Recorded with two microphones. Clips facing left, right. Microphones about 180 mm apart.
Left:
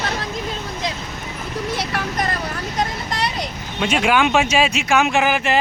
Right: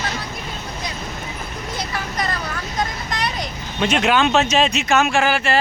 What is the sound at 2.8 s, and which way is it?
Vehicle, 35° left (ahead or behind).